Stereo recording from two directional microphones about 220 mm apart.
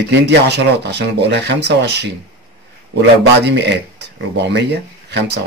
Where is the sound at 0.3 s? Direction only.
50° right (ahead or behind).